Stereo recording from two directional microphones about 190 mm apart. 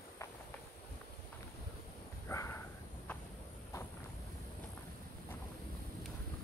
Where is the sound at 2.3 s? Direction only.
15° left (ahead or behind).